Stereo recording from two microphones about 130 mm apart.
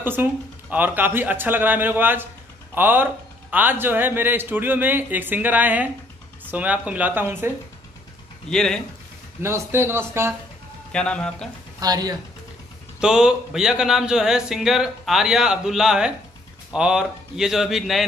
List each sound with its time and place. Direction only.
0.0 s a man's voice: 15° right (ahead or behind)
8.5 s speech: 5° left (ahead or behind)
9.4 s a man's voice: 20° right (ahead or behind)
10.9 s speech: 5° left (ahead or behind)
11.8 s a man's voice: 30° right (ahead or behind)
13.0 s speech: 5° right (ahead or behind)